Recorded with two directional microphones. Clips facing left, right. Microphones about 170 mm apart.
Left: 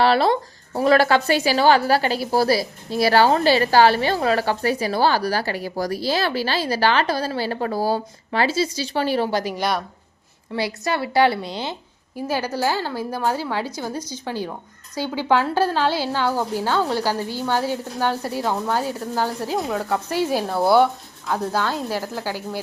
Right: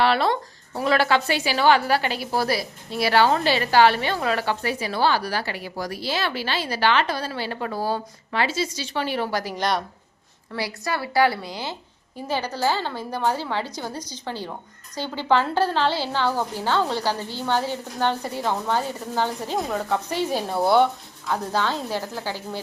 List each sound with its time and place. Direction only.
0.0 s speech: 35° left (ahead or behind)
9.4 s a woman's voice: 15° left (ahead or behind)
12.1 s a woman's voice: 10° left (ahead or behind)